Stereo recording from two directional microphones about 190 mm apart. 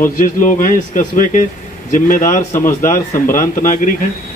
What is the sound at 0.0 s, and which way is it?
Speech, 45° left (ahead or behind).